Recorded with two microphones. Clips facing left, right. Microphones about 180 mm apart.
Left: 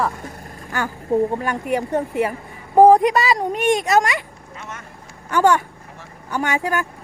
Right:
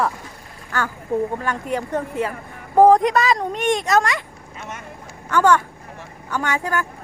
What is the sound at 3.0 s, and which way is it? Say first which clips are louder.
Speech: left 1 dB; 5° left (ahead or behind).